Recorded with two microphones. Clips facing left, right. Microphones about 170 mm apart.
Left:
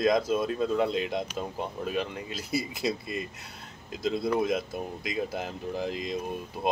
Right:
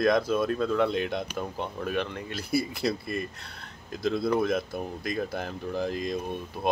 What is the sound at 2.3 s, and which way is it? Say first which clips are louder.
Speech: right 4 dB; 20° left (ahead or behind).